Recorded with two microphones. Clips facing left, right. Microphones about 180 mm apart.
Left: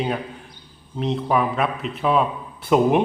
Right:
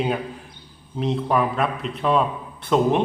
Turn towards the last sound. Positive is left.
turn(degrees=10)  # may be behind; listen again after turning